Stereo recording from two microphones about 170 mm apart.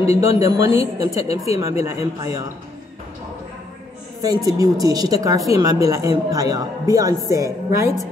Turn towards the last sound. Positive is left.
turn(degrees=-15)  # may be behind; listen again after turning